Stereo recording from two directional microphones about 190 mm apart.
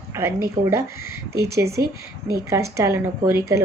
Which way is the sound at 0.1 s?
15° right (ahead or behind).